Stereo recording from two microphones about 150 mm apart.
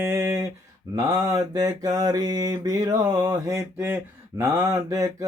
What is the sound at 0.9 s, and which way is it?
Speech, 25° right (ahead or behind).